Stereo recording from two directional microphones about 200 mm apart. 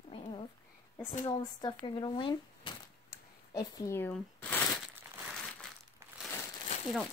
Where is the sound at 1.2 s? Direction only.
20° left (ahead or behind).